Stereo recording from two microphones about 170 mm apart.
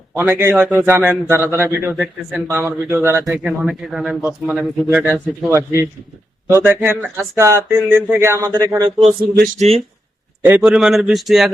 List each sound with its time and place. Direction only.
0.2 s a man's voice: 15° right (ahead or behind)
9.6 s speech: 35° right (ahead or behind)
10.4 s a man's voice: 5° right (ahead or behind)